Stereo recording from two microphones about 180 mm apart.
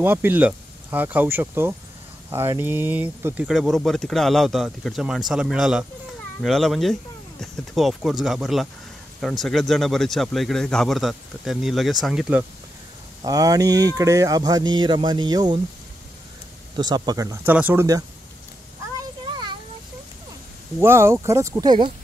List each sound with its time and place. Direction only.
0.0 s speech: 10° right (ahead or behind)
13.2 s speech: 20° right (ahead or behind)
16.7 s speech: 25° right (ahead or behind)
19.2 s a sound: 25° right (ahead or behind)
20.8 s speech: 15° right (ahead or behind)